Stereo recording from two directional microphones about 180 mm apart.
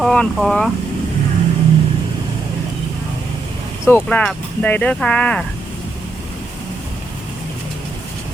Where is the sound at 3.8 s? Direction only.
10° left (ahead or behind).